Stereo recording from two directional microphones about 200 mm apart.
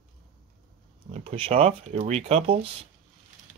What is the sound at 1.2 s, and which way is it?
Speech, 30° right (ahead or behind).